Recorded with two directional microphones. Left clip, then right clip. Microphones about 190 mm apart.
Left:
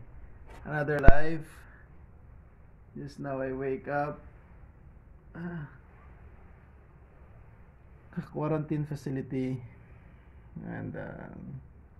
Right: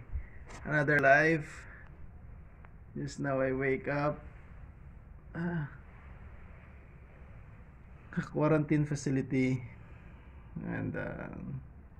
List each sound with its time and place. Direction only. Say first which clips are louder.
0.7 s speech: right 2 dB; centre (ahead or behind)
3.0 s speech: right 3 dB; 20° right (ahead or behind)
5.3 s a sound: right 4 dB; 40° right (ahead or behind)
8.1 s speech: right 3 dB; 5° left (ahead or behind)
10.6 s speech: right 2 dB; 10° left (ahead or behind)